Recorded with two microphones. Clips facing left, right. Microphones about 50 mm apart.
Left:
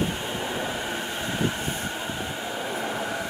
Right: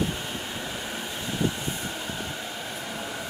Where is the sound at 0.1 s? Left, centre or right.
Left.